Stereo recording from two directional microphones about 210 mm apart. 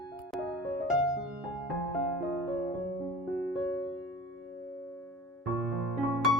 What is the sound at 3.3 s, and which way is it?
Music, centre (ahead or behind).